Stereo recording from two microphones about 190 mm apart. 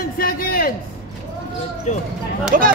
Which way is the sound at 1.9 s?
35° left (ahead or behind).